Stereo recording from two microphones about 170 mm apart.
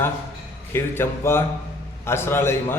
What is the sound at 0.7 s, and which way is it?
A man's voice, 15° left (ahead or behind).